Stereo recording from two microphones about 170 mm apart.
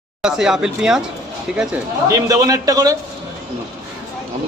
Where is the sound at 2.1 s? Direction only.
20° right (ahead or behind).